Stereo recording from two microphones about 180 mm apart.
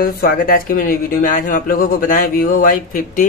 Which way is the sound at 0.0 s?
50° left (ahead or behind).